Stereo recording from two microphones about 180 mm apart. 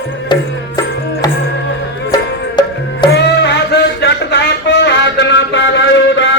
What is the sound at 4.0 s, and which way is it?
Music, 75° left (ahead or behind).